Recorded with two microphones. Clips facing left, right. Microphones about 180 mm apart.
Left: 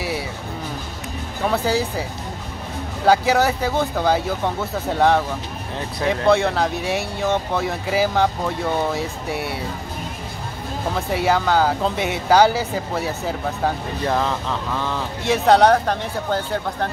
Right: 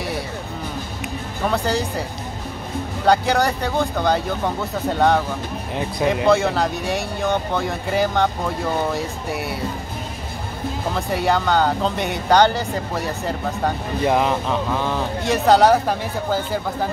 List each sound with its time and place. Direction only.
1.5 s speech: 5° left (ahead or behind)
3.1 s speech: 5° left (ahead or behind)
6.2 s speech: centre (ahead or behind)
11.0 s speech: centre (ahead or behind)
14.0 s speech: 15° right (ahead or behind)
15.2 s speech: centre (ahead or behind)